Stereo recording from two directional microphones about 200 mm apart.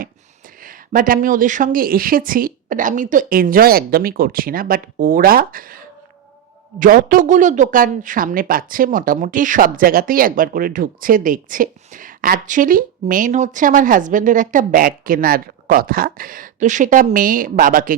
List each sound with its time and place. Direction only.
0.6 s a woman's voice: 45° right (ahead or behind)